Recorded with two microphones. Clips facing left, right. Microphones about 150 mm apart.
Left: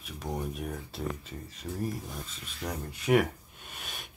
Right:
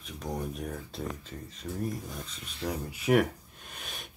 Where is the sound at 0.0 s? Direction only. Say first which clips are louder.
Even; 5° left (ahead or behind).